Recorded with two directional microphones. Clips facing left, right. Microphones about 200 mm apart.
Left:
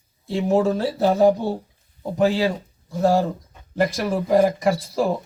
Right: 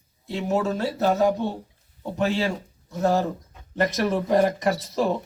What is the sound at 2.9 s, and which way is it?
Speech, 10° left (ahead or behind).